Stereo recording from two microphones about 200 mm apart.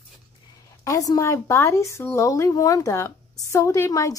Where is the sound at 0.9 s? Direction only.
15° left (ahead or behind).